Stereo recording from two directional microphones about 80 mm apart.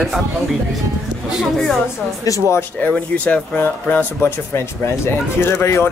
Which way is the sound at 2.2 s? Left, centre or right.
Left.